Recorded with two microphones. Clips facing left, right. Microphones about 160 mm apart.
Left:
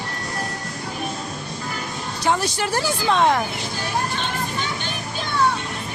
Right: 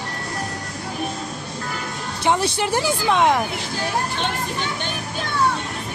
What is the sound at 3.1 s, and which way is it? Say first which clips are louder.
Speech: even; 15° right (ahead or behind).